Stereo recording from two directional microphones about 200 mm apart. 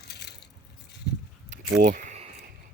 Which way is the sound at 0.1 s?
55° left (ahead or behind).